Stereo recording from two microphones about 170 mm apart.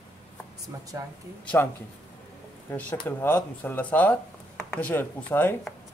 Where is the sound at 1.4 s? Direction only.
10° left (ahead or behind).